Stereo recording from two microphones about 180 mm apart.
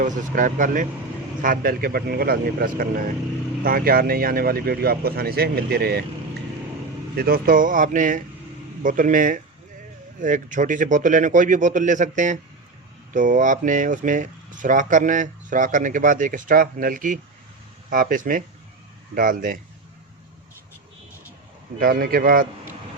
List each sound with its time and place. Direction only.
0.0 s speech: 45° right (ahead or behind)
7.2 s speech: 55° right (ahead or behind)
21.8 s speech: 50° right (ahead or behind)